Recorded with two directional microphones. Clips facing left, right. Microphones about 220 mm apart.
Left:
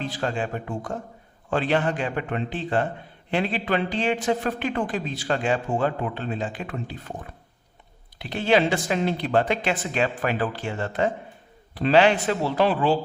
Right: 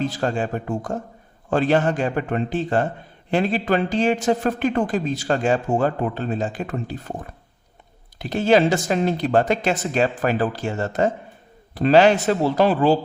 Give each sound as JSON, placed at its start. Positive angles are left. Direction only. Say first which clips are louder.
{"t": 0.0, "sound": "speech", "louder": "right 5 dB", "side_deg": -40}
{"t": 8.2, "sound": "speech", "louder": "right 4 dB", "side_deg": -45}